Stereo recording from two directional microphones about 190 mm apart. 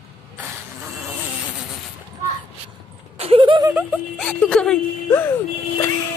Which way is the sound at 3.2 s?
30° right (ahead or behind).